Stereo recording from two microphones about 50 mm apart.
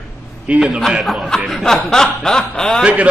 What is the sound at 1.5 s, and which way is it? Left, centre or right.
A man's voice, centre.